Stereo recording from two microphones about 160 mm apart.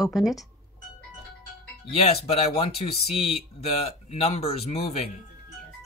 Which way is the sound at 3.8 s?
40° left (ahead or behind).